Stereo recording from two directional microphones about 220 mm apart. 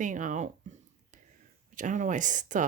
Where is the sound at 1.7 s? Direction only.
35° right (ahead or behind).